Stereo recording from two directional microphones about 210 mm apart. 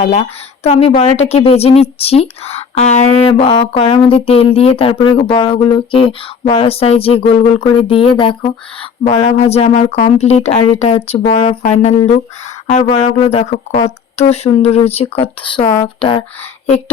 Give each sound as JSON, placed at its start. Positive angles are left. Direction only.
{"t": 0.0, "sound": "a woman's voice", "side_deg": 30}